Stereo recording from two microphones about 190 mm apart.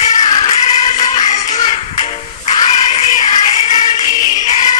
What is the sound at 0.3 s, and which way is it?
Music, 20° left (ahead or behind).